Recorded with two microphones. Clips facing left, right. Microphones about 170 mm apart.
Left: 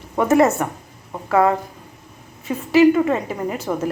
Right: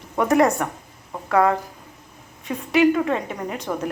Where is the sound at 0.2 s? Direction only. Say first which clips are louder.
Left 2 dB; 5° left (ahead or behind).